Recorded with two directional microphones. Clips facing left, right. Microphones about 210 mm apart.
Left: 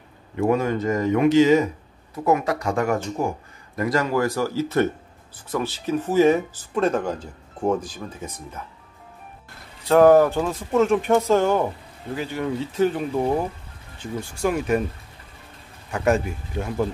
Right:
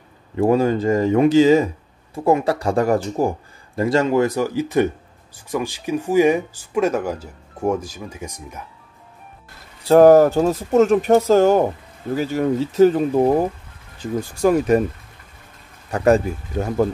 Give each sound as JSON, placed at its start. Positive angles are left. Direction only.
{"t": 0.4, "sound": "speech", "side_deg": -30}
{"t": 9.8, "sound": "speech", "side_deg": -35}
{"t": 15.9, "sound": "speech", "side_deg": -35}